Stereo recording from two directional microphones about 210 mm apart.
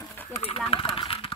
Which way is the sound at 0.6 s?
25° left (ahead or behind).